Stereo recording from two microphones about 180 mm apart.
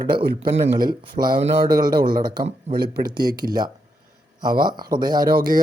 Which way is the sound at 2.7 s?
60° right (ahead or behind).